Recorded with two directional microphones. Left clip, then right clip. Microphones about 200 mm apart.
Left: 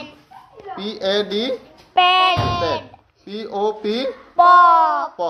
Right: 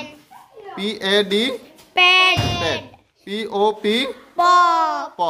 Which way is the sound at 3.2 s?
60° right (ahead or behind).